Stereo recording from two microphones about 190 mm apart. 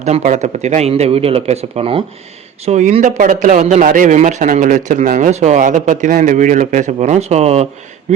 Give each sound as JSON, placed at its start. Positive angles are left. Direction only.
{"t": 0.0, "sound": "a man's voice", "side_deg": -40}